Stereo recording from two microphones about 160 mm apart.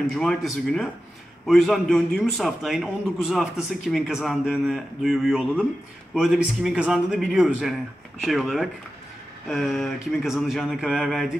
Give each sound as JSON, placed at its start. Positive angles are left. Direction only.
{"t": 0.1, "sound": "a man's voice", "side_deg": 0}